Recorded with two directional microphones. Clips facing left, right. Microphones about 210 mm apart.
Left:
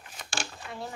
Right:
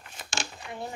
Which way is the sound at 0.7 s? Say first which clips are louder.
Right 3 dB; 20° right (ahead or behind).